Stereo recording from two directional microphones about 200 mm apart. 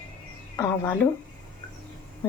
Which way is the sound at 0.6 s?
15° left (ahead or behind).